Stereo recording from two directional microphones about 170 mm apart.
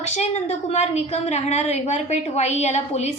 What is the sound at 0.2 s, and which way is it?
A woman's voice, 40° left (ahead or behind).